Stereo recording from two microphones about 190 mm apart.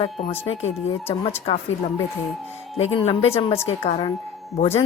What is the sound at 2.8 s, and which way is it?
A woman's voice, 30° left (ahead or behind).